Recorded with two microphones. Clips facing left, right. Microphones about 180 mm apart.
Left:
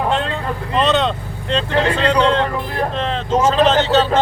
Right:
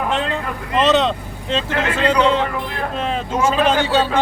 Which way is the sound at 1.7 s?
35° left (ahead or behind).